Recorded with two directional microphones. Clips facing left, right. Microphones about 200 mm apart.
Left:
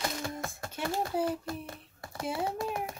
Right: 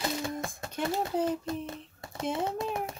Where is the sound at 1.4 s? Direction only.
20° right (ahead or behind).